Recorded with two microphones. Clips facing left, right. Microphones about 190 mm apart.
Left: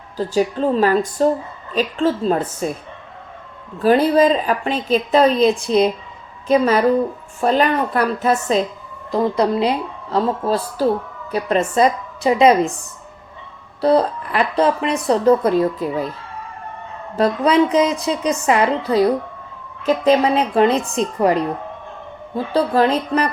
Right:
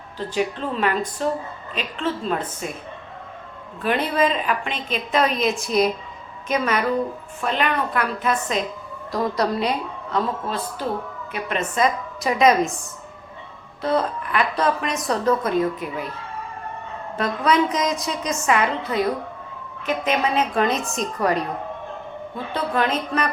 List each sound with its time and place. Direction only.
0.2 s a woman's voice: 35° left (ahead or behind)
3.8 s a woman's voice: 35° left (ahead or behind)
13.8 s a woman's voice: 35° left (ahead or behind)
17.2 s a woman's voice: 30° left (ahead or behind)
22.5 s a woman's voice: 35° left (ahead or behind)